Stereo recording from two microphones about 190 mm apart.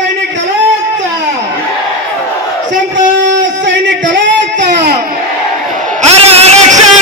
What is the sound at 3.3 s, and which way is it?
Music, 70° right (ahead or behind).